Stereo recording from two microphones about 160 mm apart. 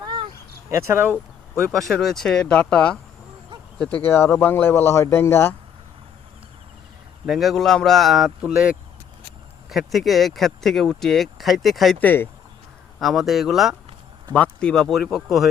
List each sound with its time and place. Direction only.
0.0 s a sound: 30° right (ahead or behind)
0.7 s speech: 15° right (ahead or behind)
1.9 s a man's voice: centre (ahead or behind)
7.3 s speech: centre (ahead or behind)
13.0 s speech: centre (ahead or behind)